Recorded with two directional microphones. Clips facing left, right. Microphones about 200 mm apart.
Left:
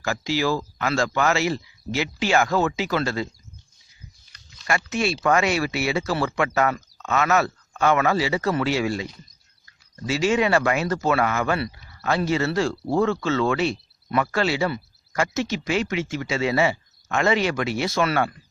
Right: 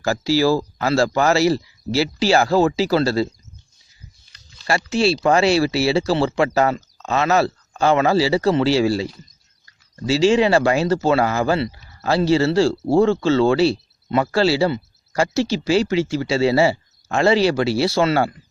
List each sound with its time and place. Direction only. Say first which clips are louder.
0.0 s speech: right 6 dB; 35° right (ahead or behind)
4.3 s a sound: right 4 dB; 30° right (ahead or behind)
4.9 s speech: right 5 dB; 30° right (ahead or behind)